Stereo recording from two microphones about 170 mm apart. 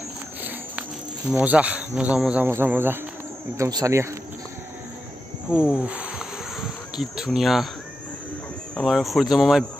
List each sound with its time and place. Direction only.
1.3 s speech: 10° right (ahead or behind)
5.5 s speech: 5° right (ahead or behind)
8.7 s speech: centre (ahead or behind)